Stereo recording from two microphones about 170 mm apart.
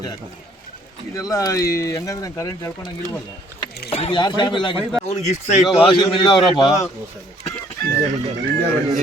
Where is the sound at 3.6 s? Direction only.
35° left (ahead or behind).